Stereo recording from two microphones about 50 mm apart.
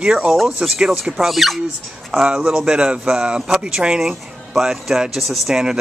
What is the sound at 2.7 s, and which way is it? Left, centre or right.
Speech, centre.